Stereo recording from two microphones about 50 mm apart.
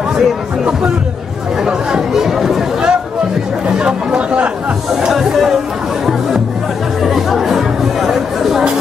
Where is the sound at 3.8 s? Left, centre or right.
Centre.